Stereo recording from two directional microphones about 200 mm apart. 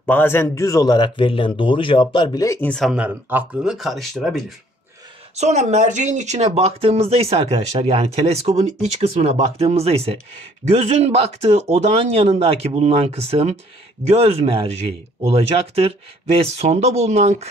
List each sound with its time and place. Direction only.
0.0 s speech: 10° left (ahead or behind)
5.4 s speech: 35° right (ahead or behind)